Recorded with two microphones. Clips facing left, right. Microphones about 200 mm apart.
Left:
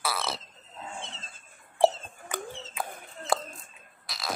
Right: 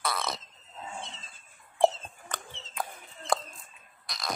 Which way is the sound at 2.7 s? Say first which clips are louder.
Left 1 dB; 5° left (ahead or behind).